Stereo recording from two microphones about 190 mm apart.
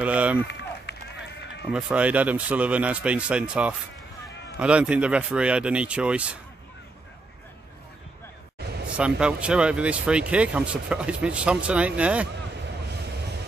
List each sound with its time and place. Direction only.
0.0 s run: 5° right (ahead or behind)
0.5 s run: 65° left (ahead or behind)
1.7 s a man's voice: 5° right (ahead or behind)
8.5 s a sound: 60° right (ahead or behind)
8.8 s speech: 5° right (ahead or behind)